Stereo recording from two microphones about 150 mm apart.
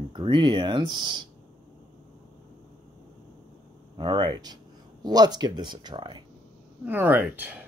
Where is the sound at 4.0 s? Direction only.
30° right (ahead or behind).